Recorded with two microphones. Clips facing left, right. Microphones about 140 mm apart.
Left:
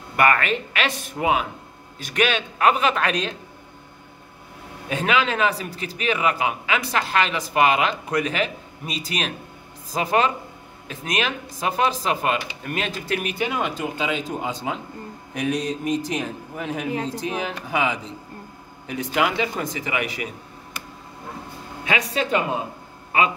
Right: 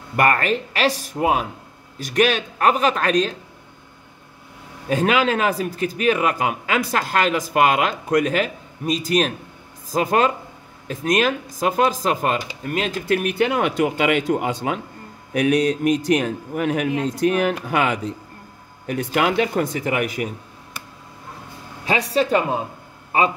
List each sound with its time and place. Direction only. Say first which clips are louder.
0.1 s speech: right 1 dB; 40° right (ahead or behind)
4.8 s a man's voice: right 4 dB; 45° right (ahead or behind)
13.4 s a man's voice: right 6 dB; 65° right (ahead or behind); by 20.2 s 45° right (ahead or behind)
21.8 s speech: right 4 dB; 35° right (ahead or behind)